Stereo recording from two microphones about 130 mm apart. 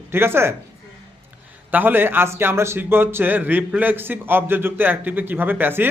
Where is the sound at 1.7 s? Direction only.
15° right (ahead or behind).